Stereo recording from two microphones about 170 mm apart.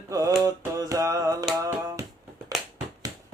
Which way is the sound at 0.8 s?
20° right (ahead or behind).